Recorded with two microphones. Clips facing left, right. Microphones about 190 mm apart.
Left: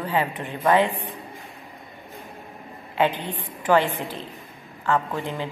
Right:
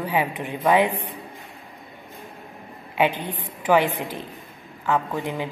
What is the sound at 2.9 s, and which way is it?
A woman's voice, 15° right (ahead or behind).